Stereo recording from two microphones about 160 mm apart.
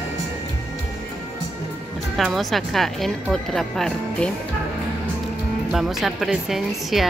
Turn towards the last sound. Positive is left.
turn(degrees=0)  # may be behind; listen again after turning